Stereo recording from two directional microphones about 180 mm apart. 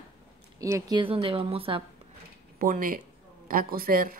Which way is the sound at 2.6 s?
50° right (ahead or behind).